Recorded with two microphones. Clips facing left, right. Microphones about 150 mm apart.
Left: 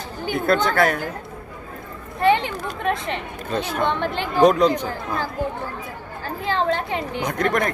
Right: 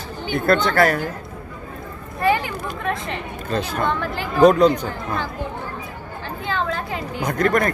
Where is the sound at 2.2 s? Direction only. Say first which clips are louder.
Left 2 dB; 25° left (ahead or behind).